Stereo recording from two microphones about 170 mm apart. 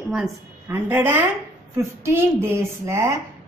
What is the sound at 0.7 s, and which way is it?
A woman's voice, 10° right (ahead or behind).